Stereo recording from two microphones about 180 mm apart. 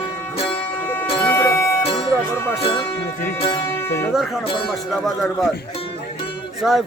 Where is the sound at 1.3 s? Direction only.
15° left (ahead or behind).